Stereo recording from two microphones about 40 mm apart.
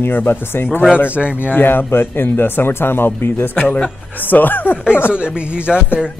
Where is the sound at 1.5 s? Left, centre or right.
Left.